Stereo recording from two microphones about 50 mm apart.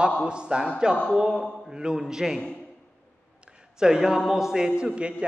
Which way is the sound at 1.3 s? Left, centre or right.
Centre.